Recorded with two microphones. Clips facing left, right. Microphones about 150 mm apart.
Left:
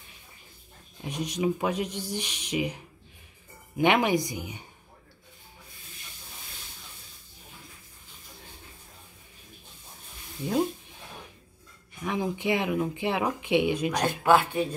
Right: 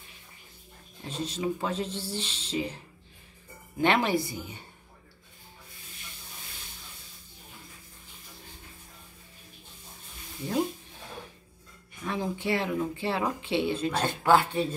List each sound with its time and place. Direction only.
1.0 s speech: 15° left (ahead or behind)
12.0 s speech: 15° left (ahead or behind)